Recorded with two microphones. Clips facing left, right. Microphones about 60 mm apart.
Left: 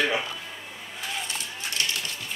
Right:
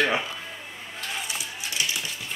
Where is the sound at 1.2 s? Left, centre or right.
Centre.